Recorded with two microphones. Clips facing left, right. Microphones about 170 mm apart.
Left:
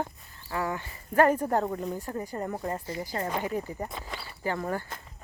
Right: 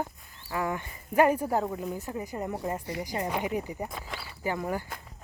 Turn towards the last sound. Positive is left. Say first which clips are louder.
# even
turn(degrees=-10)  # may be behind; listen again after turning